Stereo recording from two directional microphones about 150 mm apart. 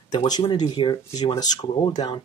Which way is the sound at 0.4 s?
30° left (ahead or behind).